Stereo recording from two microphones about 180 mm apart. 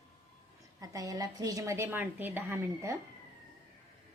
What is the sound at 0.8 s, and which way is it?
A woman's voice, 20° right (ahead or behind).